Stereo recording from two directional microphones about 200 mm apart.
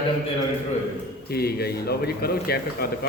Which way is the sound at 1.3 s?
50° left (ahead or behind).